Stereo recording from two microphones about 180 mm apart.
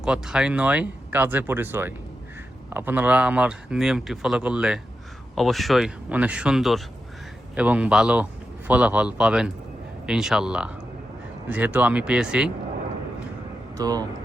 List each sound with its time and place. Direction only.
0.0 s speech: 5° right (ahead or behind)
13.7 s speech: 20° right (ahead or behind)